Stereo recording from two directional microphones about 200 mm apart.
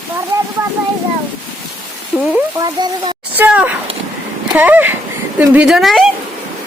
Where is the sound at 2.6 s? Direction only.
20° right (ahead or behind).